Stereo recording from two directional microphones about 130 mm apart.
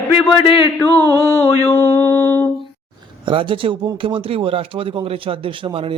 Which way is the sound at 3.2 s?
40° right (ahead or behind).